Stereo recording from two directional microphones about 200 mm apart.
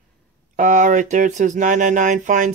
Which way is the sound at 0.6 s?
40° right (ahead or behind).